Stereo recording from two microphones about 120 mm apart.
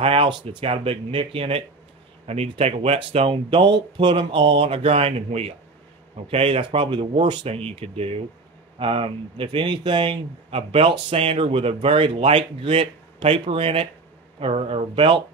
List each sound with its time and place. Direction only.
0.0 s speech: 50° right (ahead or behind)